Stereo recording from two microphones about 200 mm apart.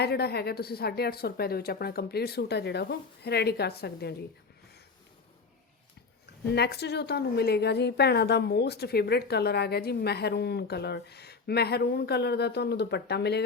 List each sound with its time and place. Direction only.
0.0 s a woman's voice: 55° left (ahead or behind)
6.5 s a woman's voice: 55° left (ahead or behind)